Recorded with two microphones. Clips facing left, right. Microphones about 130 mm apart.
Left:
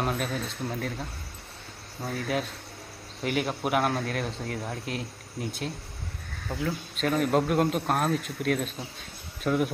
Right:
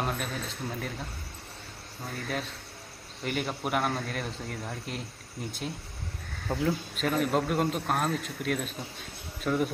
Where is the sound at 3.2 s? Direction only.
Centre (ahead or behind).